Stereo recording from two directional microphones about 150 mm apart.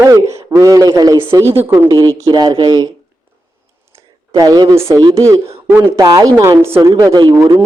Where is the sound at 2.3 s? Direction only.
25° right (ahead or behind).